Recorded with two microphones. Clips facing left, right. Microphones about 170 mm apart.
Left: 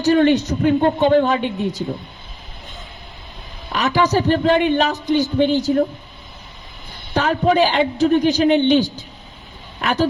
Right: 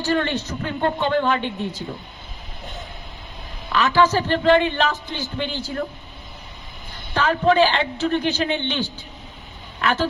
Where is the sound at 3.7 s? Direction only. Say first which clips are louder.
Even; 45° left (ahead or behind).